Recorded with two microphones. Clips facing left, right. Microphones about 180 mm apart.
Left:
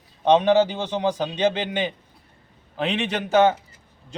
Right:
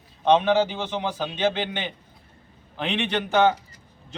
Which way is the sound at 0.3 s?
10° left (ahead or behind).